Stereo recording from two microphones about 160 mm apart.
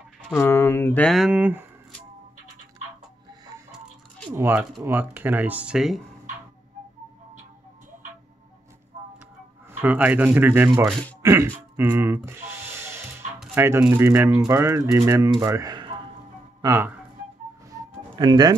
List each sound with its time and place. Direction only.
0.3 s speech: 15° left (ahead or behind); by 1.7 s 10° right (ahead or behind)
4.3 s speech: 15° right (ahead or behind)
9.7 s speech: 10° right (ahead or behind)
11.2 s music: 15° right (ahead or behind)
13.6 s speech: 10° right (ahead or behind); by 16.0 s 30° right (ahead or behind)
16.6 s speech: 20° right (ahead or behind)
17.6 s music: 25° right (ahead or behind)